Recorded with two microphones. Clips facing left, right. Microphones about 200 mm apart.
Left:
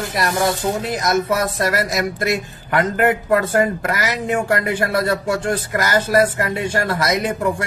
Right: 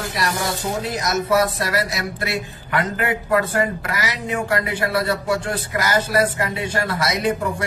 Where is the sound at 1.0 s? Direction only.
50° left (ahead or behind).